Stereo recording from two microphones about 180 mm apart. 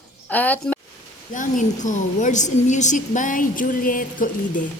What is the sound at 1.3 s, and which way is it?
A woman's voice, 45° left (ahead or behind).